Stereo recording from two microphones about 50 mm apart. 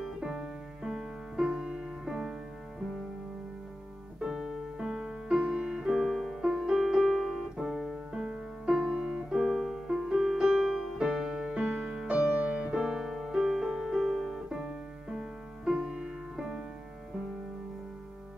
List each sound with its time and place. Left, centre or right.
0.0 s piano: centre
1.5 s music: centre
4.2 s music: centre
5.4 s music: right; by 6.3 s centre
6.4 s piano: centre
8.7 s music: right
9.4 s music: centre; by 16.1 s right
16.3 s music: centre